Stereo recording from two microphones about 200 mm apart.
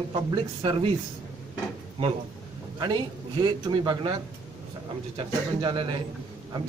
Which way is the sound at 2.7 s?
20° right (ahead or behind).